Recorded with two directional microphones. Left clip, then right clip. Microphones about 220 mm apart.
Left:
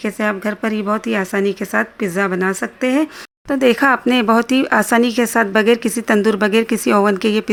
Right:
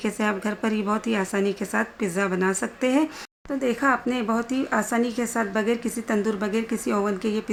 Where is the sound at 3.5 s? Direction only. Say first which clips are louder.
Left 9 dB; 40° left (ahead or behind).